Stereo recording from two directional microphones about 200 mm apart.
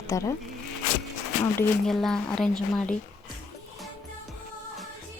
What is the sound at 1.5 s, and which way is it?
A woman's voice, centre (ahead or behind).